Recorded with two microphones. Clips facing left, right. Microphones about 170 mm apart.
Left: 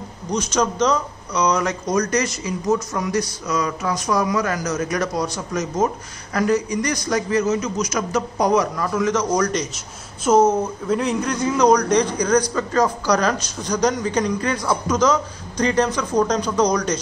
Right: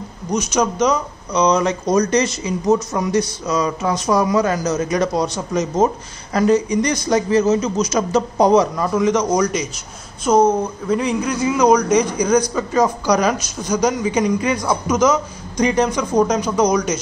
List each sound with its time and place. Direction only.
0.3 s a man's voice: 10° right (ahead or behind)
1.3 s speech: 25° right (ahead or behind); by 9.7 s 10° right (ahead or behind)
10.2 s a man's voice: 5° left (ahead or behind)